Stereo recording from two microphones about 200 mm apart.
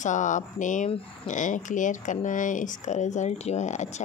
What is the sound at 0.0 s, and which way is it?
Speech, 40° left (ahead or behind).